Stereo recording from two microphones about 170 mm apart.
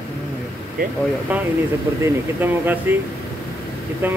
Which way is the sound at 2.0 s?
10° right (ahead or behind).